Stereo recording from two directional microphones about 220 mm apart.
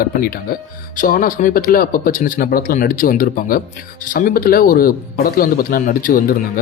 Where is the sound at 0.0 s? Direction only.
40° left (ahead or behind).